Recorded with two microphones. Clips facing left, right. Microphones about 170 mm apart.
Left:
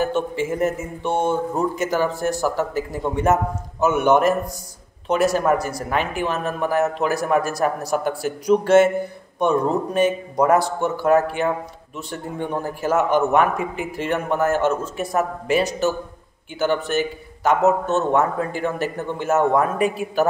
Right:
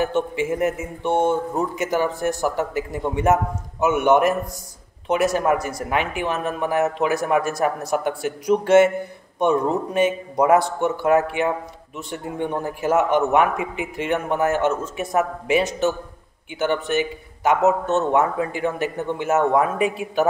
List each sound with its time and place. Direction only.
0.0 s a man's voice: 20° right (ahead or behind)